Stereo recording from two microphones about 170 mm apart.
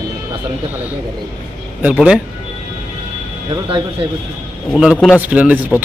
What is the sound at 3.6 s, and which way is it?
Speech, 30° right (ahead or behind).